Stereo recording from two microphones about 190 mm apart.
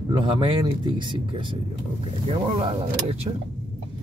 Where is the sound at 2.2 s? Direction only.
30° right (ahead or behind).